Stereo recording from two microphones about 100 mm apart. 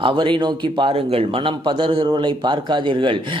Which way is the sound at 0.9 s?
75° right (ahead or behind).